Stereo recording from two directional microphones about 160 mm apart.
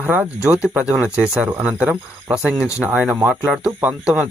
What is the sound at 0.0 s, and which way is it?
Speech, 10° right (ahead or behind).